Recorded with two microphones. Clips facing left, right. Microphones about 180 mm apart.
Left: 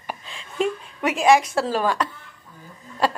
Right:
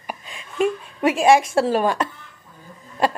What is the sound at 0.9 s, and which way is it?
A woman's voice, 25° right (ahead or behind).